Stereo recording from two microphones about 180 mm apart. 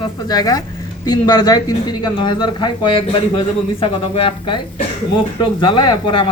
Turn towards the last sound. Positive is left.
turn(degrees=25)  # may be behind; listen again after turning